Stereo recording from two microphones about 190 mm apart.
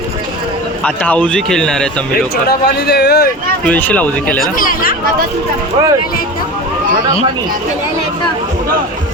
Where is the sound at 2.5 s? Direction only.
55° left (ahead or behind).